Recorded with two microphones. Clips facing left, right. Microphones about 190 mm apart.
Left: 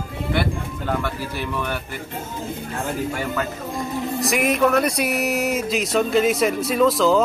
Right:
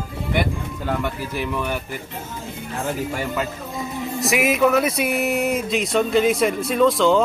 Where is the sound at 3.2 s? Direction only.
15° right (ahead or behind).